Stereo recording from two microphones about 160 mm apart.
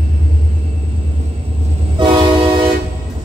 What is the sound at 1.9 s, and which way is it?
Train, 30° right (ahead or behind).